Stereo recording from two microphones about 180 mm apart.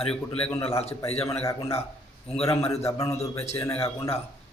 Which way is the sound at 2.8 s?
15° left (ahead or behind).